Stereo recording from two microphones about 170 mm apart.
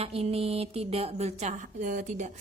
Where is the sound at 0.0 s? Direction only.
35° right (ahead or behind).